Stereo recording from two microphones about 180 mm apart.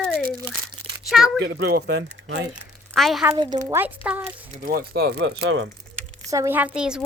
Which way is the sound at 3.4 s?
20° right (ahead or behind).